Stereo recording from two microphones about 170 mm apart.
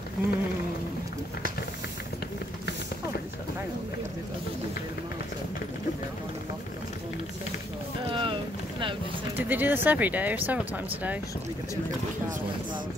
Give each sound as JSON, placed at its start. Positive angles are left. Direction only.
{"t": 0.2, "sound": "speech", "side_deg": -5}
{"t": 8.1, "sound": "boat", "side_deg": -30}
{"t": 9.4, "sound": "speech", "side_deg": -10}